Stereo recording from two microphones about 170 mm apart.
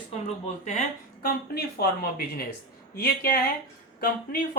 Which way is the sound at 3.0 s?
60° left (ahead or behind).